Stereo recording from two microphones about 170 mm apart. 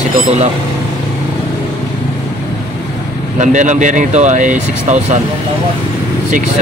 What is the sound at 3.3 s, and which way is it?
Speech, 45° right (ahead or behind).